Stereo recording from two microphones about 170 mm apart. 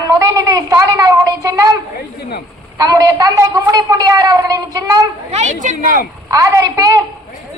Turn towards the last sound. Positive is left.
turn(degrees=-20)  # may be behind; listen again after turning